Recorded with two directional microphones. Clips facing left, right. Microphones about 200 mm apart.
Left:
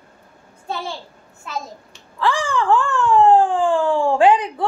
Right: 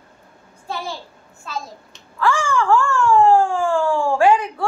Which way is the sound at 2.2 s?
20° left (ahead or behind).